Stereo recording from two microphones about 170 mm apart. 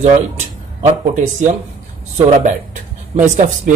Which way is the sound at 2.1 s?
40° right (ahead or behind).